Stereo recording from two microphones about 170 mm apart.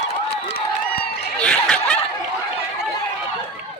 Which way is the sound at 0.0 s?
40° left (ahead or behind).